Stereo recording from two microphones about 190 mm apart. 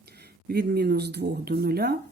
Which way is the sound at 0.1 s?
55° right (ahead or behind).